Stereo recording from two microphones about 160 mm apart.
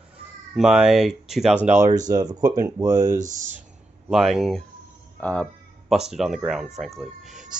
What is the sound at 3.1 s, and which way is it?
Speech, 50° right (ahead or behind).